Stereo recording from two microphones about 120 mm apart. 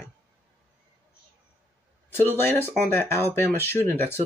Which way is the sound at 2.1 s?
20° left (ahead or behind).